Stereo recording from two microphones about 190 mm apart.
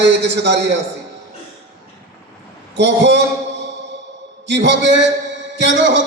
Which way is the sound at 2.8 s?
65° right (ahead or behind).